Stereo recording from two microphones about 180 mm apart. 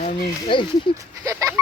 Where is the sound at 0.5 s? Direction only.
25° left (ahead or behind).